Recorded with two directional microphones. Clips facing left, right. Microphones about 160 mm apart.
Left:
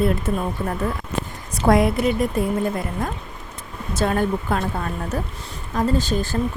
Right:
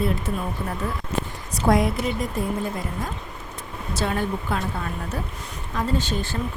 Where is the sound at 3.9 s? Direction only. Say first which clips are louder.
Left 5 dB; 50° left (ahead or behind).